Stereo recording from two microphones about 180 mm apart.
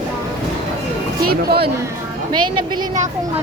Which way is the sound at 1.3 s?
60° right (ahead or behind).